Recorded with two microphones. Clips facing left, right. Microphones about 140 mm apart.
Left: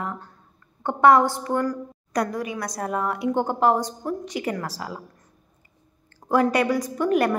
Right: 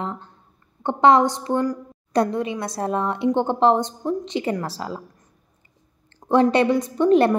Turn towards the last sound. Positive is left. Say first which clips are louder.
# right 5 dB
turn(degrees=-25)  # may be behind; listen again after turning